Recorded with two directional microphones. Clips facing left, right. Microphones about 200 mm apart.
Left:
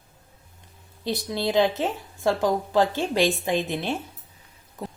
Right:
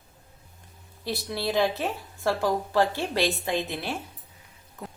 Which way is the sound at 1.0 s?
15° left (ahead or behind).